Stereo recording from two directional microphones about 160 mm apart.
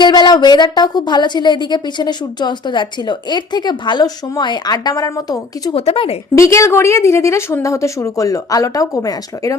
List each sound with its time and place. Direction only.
0.0 s speech: 25° left (ahead or behind)
5.7 s speech: 40° left (ahead or behind)
6.3 s speech: 20° left (ahead or behind)